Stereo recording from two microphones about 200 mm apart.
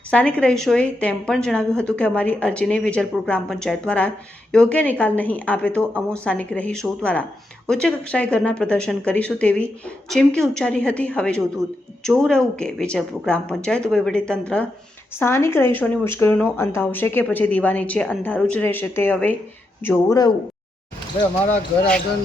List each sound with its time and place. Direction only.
0.1 s a woman's voice: 5° left (ahead or behind)
21.5 s a woman's voice: 5° left (ahead or behind)